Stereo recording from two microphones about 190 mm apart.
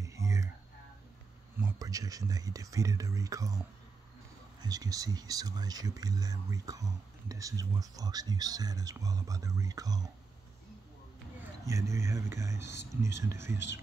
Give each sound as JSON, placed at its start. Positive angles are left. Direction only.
{"t": 0.0, "sound": "a sound", "side_deg": -15}
{"t": 1.6, "sound": "speech", "side_deg": -15}
{"t": 11.6, "sound": "speech", "side_deg": -15}